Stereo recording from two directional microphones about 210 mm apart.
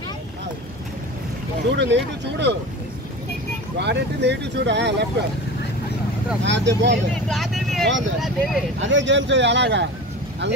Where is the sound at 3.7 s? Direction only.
55° right (ahead or behind).